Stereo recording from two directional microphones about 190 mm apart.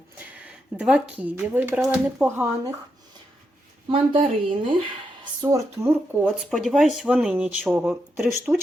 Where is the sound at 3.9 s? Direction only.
30° right (ahead or behind).